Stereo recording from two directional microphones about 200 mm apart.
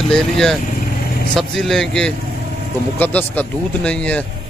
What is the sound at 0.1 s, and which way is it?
Speech, centre (ahead or behind).